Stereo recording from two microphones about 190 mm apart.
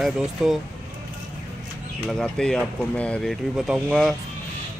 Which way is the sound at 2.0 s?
5° left (ahead or behind).